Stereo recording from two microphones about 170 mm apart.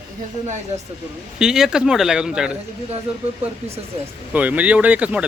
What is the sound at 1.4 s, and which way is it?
Speech, 5° right (ahead or behind).